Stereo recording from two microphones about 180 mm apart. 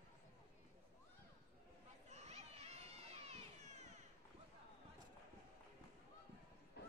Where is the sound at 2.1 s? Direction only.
40° right (ahead or behind).